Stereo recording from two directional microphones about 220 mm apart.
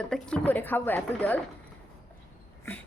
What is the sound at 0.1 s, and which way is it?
Speech, 5° left (ahead or behind).